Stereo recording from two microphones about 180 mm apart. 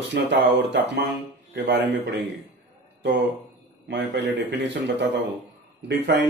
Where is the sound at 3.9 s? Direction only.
75° right (ahead or behind).